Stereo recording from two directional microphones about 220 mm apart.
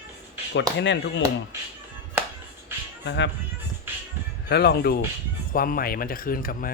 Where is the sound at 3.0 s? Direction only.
55° left (ahead or behind).